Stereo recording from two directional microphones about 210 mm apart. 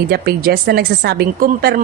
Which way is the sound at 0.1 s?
45° right (ahead or behind).